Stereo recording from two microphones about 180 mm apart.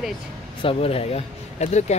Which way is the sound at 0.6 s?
35° left (ahead or behind).